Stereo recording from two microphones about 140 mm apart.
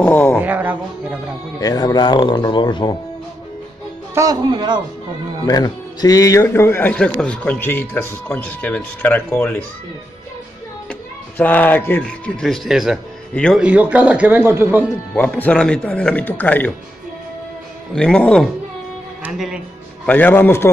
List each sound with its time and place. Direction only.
0.0 s a sound: 15° left (ahead or behind)
0.4 s music: 10° right (ahead or behind)
1.6 s speech: 25° left (ahead or behind)
4.1 s speech: 25° right (ahead or behind)
5.5 s a man's voice: 30° left (ahead or behind); by 9.6 s 10° left (ahead or behind)
10.9 s speech: 10° left (ahead or behind)
13.3 s a man's voice: 10° left (ahead or behind)
13.6 s speech: 10° right (ahead or behind)
15.1 s a man's voice: 10° left (ahead or behind)
17.9 s a man's voice: 5° left (ahead or behind)
20.1 s a man's voice: 15° left (ahead or behind)